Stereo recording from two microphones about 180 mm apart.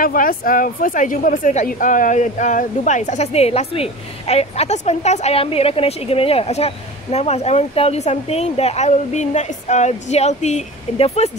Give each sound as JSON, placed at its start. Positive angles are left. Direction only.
{"t": 0.0, "sound": "a woman's voice", "side_deg": 50}